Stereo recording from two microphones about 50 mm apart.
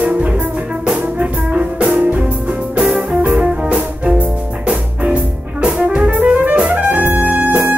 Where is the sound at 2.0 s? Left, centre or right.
Right.